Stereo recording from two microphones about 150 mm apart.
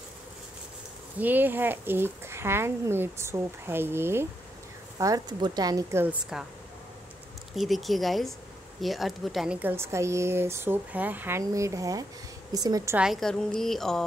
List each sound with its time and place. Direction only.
1.2 s speech: 10° right (ahead or behind)
7.5 s a woman's voice: centre (ahead or behind)
9.6 s speech: 15° right (ahead or behind)
12.9 s a woman's voice: 5° right (ahead or behind)